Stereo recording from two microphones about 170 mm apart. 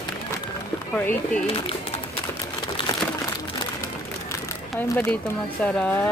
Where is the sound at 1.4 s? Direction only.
35° left (ahead or behind).